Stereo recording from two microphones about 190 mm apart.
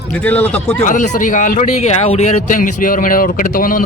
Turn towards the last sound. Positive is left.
turn(degrees=45)  # may be behind; listen again after turning